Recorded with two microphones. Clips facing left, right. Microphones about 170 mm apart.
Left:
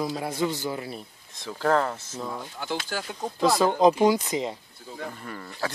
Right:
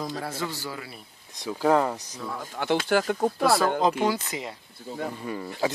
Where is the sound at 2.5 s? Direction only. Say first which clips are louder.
Right 11 dB; 65° right (ahead or behind).